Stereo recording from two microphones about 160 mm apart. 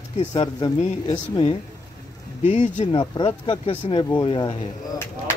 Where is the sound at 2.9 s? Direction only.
30° left (ahead or behind).